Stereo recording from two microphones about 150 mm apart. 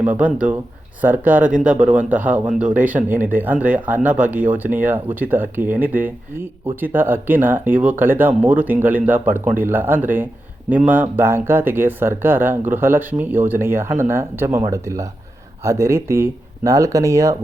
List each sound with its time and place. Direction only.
0.0 s speech: 10° right (ahead or behind)